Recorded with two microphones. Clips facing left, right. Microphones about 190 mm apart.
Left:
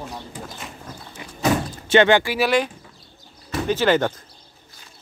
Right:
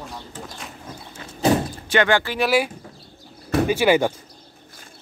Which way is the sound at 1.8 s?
25° left (ahead or behind).